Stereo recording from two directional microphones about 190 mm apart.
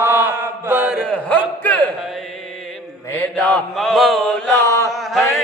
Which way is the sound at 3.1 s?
5° left (ahead or behind).